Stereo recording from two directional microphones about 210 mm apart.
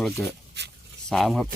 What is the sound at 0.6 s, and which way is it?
Writing, 50° right (ahead or behind).